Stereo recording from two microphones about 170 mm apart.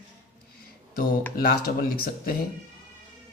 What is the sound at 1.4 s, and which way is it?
Speech, 60° left (ahead or behind).